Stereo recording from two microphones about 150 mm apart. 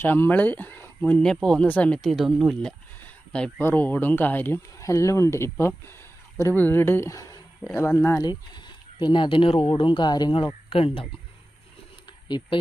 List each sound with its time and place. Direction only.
0.0 s speech: 15° left (ahead or behind)
8.2 s speech: 30° left (ahead or behind)
12.1 s a sound: 30° left (ahead or behind)